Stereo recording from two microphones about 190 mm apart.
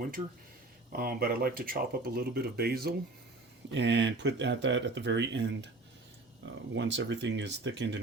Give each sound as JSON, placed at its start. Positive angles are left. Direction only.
{"t": 0.9, "sound": "speech", "side_deg": -50}
{"t": 3.7, "sound": "speech", "side_deg": -65}